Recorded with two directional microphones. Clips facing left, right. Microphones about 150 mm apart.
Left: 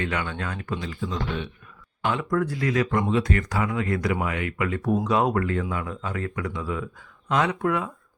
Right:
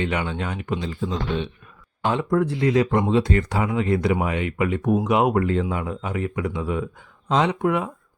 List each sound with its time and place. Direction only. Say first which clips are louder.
0.0 s speech: right 3 dB; 20° right (ahead or behind)